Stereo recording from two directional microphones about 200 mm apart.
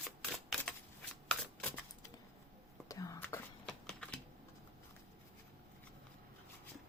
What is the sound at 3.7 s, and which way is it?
Typewriter, 5° left (ahead or behind).